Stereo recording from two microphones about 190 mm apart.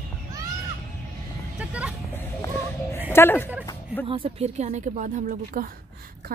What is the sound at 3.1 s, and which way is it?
Speech, 10° left (ahead or behind).